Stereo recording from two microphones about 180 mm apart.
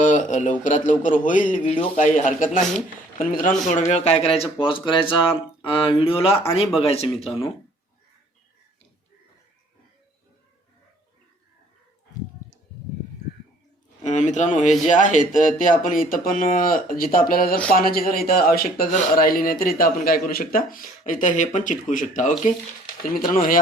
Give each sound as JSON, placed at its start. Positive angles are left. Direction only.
{"t": 0.0, "sound": "a man's voice", "side_deg": 45}
{"t": 1.6, "sound": "speech", "side_deg": 30}
{"t": 2.0, "sound": "speech", "side_deg": 45}
{"t": 14.0, "sound": "speech", "side_deg": 40}